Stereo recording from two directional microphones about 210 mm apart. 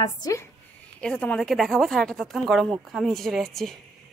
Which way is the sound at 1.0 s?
5° left (ahead or behind).